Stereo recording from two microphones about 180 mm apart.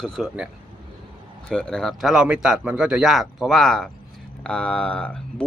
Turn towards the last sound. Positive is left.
turn(degrees=5)  # may be behind; listen again after turning